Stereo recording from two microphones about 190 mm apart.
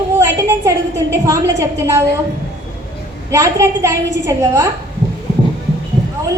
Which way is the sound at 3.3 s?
15° right (ahead or behind).